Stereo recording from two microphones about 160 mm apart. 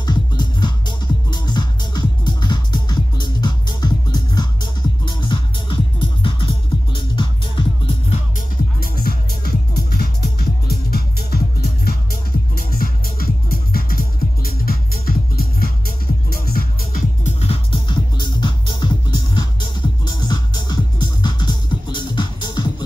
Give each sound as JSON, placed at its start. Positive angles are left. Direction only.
{"t": 0.0, "sound": "music", "side_deg": 25}
{"t": 8.8, "sound": "music", "side_deg": 70}
{"t": 17.2, "sound": "music", "side_deg": 40}